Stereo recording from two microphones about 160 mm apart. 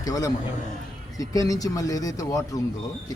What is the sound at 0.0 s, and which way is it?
A man's voice, 20° left (ahead or behind).